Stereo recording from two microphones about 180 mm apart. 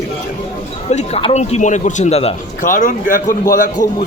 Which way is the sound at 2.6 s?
50° left (ahead or behind).